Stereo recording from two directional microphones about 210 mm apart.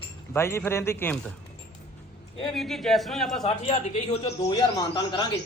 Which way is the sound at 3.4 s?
30° left (ahead or behind).